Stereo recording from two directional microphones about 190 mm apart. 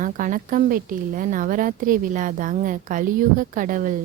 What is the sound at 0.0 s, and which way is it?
Speech, 45° right (ahead or behind).